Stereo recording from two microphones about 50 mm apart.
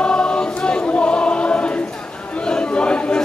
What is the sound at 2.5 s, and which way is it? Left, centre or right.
Chatter, centre.